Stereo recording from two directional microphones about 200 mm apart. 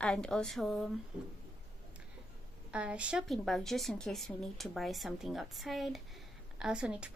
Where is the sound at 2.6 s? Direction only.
5° right (ahead or behind).